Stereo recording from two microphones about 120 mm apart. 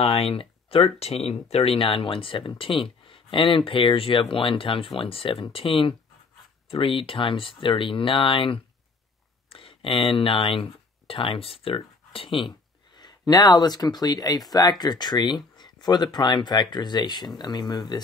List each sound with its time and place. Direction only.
0.0 s speech: 55° left (ahead or behind); by 18.0 s 35° left (ahead or behind)